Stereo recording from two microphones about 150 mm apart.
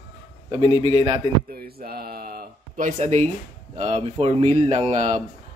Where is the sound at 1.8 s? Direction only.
90° right.